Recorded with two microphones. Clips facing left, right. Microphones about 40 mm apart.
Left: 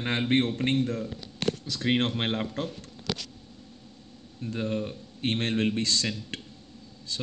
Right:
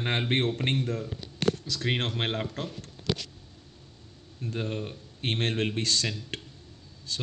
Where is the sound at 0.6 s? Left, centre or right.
Right.